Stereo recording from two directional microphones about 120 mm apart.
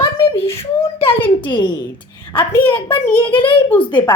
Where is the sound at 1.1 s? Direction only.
15° left (ahead or behind).